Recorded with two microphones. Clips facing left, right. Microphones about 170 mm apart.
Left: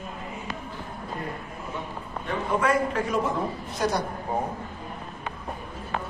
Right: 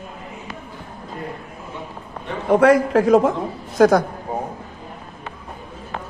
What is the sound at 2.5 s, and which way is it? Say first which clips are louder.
A man's voice: right 11 dB; 80° right.